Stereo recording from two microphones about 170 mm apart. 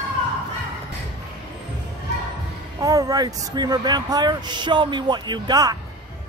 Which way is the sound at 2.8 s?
20° right (ahead or behind).